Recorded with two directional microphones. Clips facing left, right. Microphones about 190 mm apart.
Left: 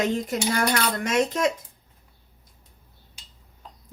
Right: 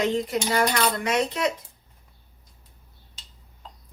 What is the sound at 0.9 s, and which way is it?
Speech, 45° left (ahead or behind).